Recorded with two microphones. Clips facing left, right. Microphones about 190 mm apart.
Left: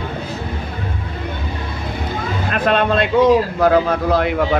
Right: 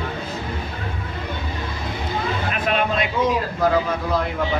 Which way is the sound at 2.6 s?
70° left (ahead or behind).